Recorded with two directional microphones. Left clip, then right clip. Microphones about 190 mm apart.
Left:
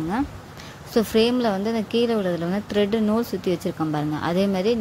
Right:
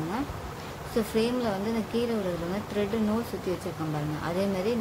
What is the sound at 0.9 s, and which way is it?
Speech, 40° left (ahead or behind).